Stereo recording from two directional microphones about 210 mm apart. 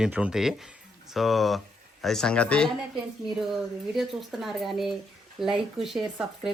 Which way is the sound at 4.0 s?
Centre (ahead or behind).